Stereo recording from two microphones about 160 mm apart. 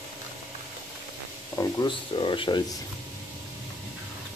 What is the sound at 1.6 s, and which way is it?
Speech, 30° left (ahead or behind).